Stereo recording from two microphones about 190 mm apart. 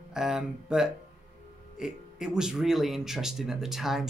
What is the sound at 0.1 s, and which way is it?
Speech, centre (ahead or behind).